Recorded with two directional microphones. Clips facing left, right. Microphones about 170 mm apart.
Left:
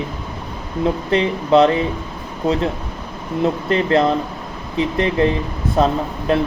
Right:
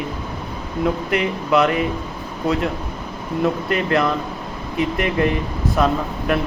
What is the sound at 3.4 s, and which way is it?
Speech, 30° left (ahead or behind).